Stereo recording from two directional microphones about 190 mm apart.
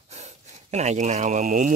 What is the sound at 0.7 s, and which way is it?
Speech, 35° right (ahead or behind).